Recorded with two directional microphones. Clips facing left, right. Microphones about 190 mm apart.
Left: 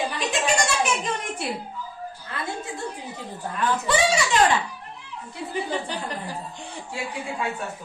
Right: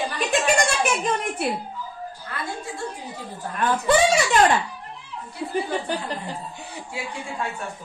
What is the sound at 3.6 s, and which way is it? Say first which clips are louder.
Speech: right 3 dB; 50° right (ahead or behind).